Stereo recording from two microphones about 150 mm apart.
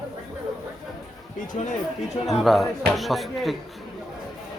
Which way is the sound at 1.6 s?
50° left (ahead or behind).